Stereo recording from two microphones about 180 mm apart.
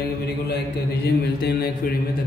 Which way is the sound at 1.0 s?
60° left (ahead or behind).